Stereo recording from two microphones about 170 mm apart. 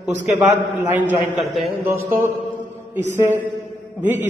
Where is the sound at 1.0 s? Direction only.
10° right (ahead or behind).